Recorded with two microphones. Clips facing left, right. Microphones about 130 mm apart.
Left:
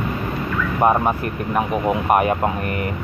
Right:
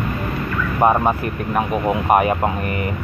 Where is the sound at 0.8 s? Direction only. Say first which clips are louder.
Right 1 dB; 5° right (ahead or behind).